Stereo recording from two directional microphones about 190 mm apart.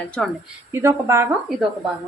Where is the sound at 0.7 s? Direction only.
15° right (ahead or behind).